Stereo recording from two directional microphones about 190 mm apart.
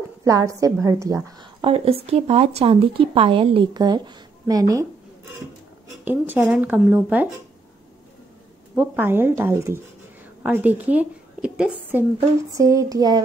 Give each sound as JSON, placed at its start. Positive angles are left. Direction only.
{"t": 0.2, "sound": "a woman's voice", "side_deg": -15}
{"t": 6.0, "sound": "speech", "side_deg": -10}
{"t": 8.7, "sound": "a woman's voice", "side_deg": -10}